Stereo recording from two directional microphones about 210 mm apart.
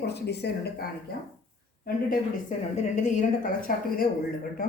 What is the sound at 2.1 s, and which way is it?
A woman's voice, 35° left (ahead or behind).